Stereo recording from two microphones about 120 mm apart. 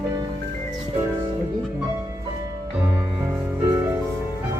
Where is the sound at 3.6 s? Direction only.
25° right (ahead or behind).